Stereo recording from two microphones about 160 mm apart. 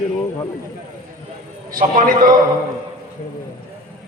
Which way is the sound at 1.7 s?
60° right (ahead or behind).